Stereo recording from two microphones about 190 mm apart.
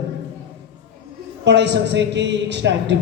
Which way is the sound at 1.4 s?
65° right (ahead or behind).